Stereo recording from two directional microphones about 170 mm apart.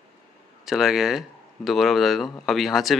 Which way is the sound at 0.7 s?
Centre (ahead or behind).